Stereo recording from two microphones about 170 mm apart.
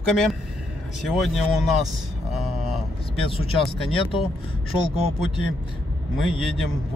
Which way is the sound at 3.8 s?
30° left (ahead or behind).